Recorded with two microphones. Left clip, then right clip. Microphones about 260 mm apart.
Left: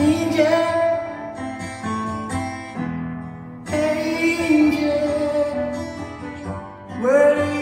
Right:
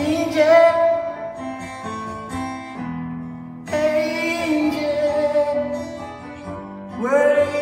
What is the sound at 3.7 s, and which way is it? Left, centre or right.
Music, centre.